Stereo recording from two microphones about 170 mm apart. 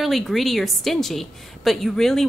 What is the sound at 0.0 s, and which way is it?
A woman's voice, centre (ahead or behind).